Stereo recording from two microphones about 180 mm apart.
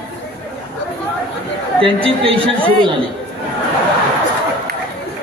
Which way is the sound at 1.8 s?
30° right (ahead or behind).